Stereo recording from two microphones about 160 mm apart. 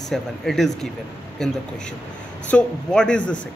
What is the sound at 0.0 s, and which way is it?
Speech, centre (ahead or behind).